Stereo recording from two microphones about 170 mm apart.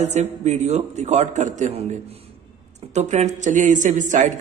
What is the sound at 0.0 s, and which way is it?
A man's voice, 40° right (ahead or behind).